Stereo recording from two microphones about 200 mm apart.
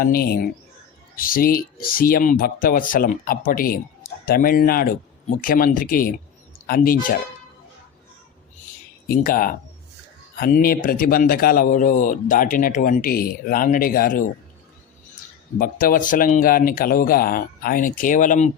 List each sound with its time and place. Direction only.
0.0 s a man's voice: 50° left (ahead or behind)
9.0 s a man's voice: 45° left (ahead or behind)
15.5 s a man's voice: 45° left (ahead or behind)